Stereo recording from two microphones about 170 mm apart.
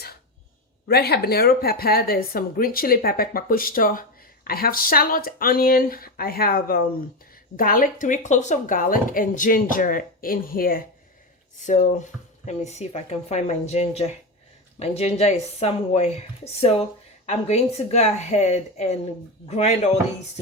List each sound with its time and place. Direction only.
0.9 s speech: 65° left (ahead or behind); by 20.0 s 40° left (ahead or behind)